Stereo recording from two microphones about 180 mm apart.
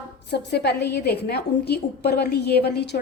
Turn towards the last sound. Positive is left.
turn(degrees=65)  # may be behind; listen again after turning